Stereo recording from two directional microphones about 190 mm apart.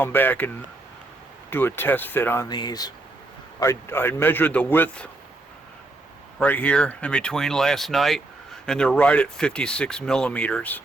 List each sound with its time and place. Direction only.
0.0 s a man's voice: 10° left (ahead or behind)
2.5 s a man's voice: 20° left (ahead or behind)
6.4 s speech: 10° left (ahead or behind)